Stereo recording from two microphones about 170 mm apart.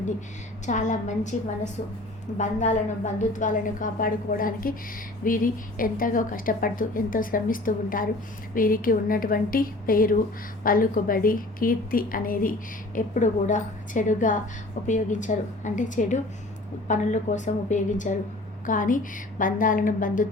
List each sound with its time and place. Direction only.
0.6 s a woman's voice: 45° left (ahead or behind)
2.4 s a woman's voice: 45° left (ahead or behind)